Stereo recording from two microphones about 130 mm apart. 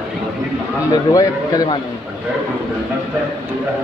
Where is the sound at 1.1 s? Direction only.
30° left (ahead or behind).